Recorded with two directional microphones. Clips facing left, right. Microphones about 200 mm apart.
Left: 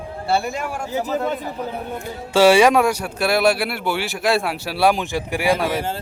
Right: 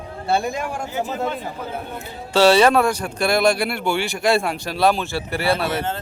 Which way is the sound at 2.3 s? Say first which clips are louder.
Left 1 dB; 10° left (ahead or behind).